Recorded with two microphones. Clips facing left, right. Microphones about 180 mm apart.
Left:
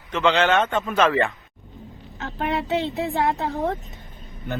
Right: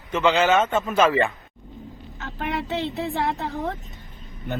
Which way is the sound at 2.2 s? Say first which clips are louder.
Left 5 dB; 30° left (ahead or behind).